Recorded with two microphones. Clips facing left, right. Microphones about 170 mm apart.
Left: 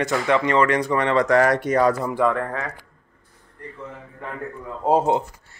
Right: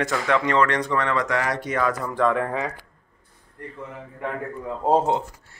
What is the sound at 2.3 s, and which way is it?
Speech, 15° right (ahead or behind).